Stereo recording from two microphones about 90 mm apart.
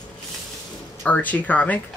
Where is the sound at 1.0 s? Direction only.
15° left (ahead or behind).